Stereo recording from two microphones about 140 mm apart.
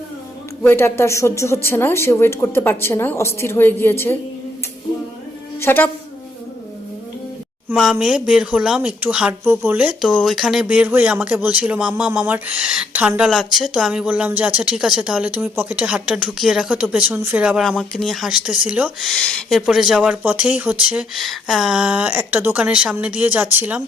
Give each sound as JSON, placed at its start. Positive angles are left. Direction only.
{"t": 0.6, "sound": "speech", "side_deg": 15}
{"t": 5.5, "sound": "speech", "side_deg": 15}
{"t": 7.8, "sound": "speech", "side_deg": -5}
{"t": 17.6, "sound": "speech", "side_deg": 0}
{"t": 19.0, "sound": "speech", "side_deg": 5}